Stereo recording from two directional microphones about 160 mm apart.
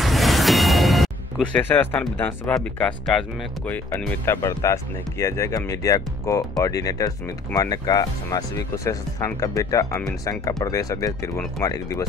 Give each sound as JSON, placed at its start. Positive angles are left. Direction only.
{"t": 0.0, "sound": "speech", "side_deg": 0}